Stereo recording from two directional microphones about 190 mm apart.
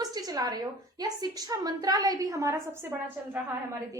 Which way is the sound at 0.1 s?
20° right (ahead or behind).